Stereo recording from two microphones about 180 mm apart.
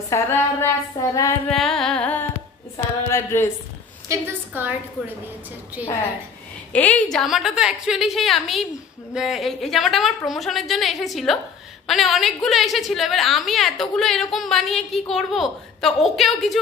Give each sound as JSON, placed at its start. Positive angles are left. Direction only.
{"t": 0.1, "sound": "a woman's voice", "side_deg": 20}
{"t": 1.5, "sound": "a woman's voice", "side_deg": 0}
{"t": 4.1, "sound": "a woman's voice", "side_deg": -10}
{"t": 5.8, "sound": "a woman's voice", "side_deg": -10}
{"t": 6.7, "sound": "a woman's voice", "side_deg": 5}